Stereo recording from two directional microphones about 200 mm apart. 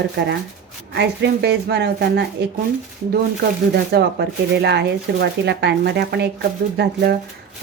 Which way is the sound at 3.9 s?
55° right (ahead or behind).